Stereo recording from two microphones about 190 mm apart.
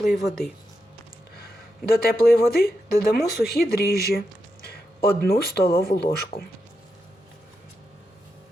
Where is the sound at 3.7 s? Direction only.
55° left (ahead or behind).